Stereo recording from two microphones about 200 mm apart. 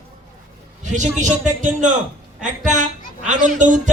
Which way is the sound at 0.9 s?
35° right (ahead or behind).